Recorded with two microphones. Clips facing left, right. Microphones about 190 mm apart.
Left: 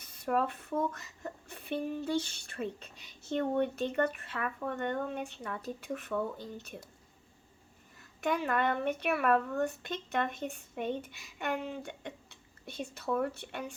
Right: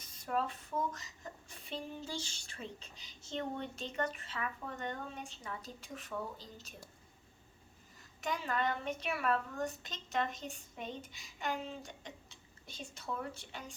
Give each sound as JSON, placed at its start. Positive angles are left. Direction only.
{"t": 0.0, "sound": "speech", "side_deg": 60}
{"t": 8.2, "sound": "speech", "side_deg": 60}